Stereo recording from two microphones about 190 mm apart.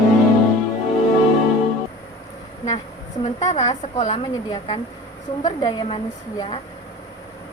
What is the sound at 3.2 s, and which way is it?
A woman's voice, 35° left (ahead or behind).